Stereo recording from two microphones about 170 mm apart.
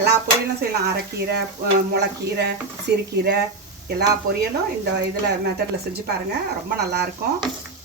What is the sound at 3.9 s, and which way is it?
Speech, 70° right (ahead or behind).